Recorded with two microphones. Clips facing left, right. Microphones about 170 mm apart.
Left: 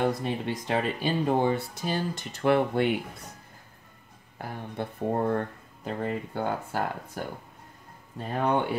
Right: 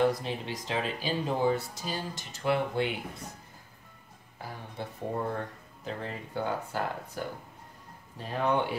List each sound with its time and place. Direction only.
0.2 s speech: 55° left (ahead or behind)
4.4 s speech: 60° left (ahead or behind)